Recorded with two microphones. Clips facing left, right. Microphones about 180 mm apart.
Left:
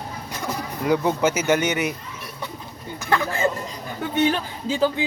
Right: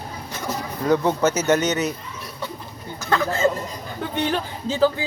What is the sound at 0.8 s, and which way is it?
Speech, 10° left (ahead or behind).